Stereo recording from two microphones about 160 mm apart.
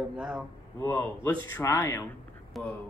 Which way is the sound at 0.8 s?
15° left (ahead or behind).